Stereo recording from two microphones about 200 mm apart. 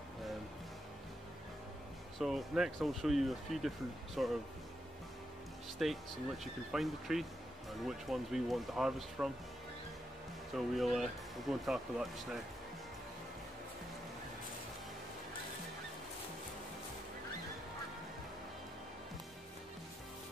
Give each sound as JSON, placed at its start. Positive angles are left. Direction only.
{"t": 2.1, "sound": "speech", "side_deg": 0}
{"t": 5.8, "sound": "speech", "side_deg": 0}
{"t": 10.5, "sound": "speech", "side_deg": 0}